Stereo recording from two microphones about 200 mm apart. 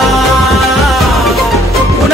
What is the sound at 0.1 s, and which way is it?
Music, centre (ahead or behind).